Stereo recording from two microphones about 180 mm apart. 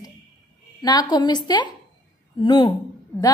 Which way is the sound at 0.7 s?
20° left (ahead or behind).